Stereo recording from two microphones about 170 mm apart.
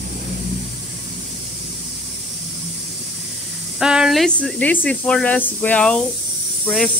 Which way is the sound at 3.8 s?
5° right (ahead or behind).